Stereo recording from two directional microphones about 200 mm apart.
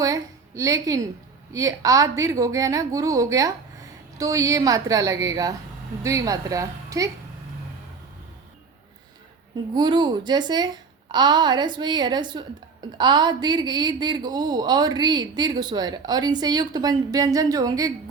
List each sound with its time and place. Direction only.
0.0 s a woman's voice: 15° right (ahead or behind)
9.7 s a woman's voice: 20° right (ahead or behind)